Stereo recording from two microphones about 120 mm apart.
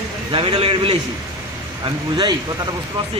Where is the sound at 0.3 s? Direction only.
45° right (ahead or behind).